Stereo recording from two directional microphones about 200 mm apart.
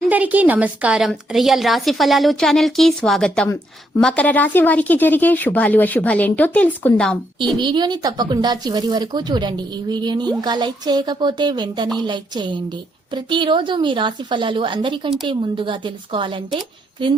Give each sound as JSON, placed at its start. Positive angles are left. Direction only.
{"t": 0.1, "sound": "a woman's voice", "side_deg": -10}
{"t": 7.6, "sound": "speech", "side_deg": -20}